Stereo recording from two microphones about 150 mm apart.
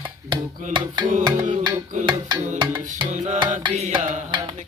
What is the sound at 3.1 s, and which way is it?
Music, 50° right (ahead or behind).